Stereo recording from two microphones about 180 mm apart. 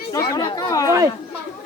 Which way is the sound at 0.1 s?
15° left (ahead or behind).